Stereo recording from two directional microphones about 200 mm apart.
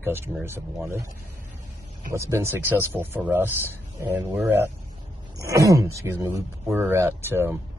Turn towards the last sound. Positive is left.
turn(degrees=-10)  # may be behind; listen again after turning